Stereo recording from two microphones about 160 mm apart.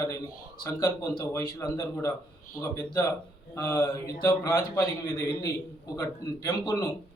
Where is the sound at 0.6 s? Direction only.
20° left (ahead or behind).